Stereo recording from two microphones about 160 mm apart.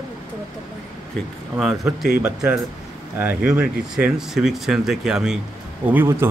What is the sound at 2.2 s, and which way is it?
A man's voice, 10° right (ahead or behind).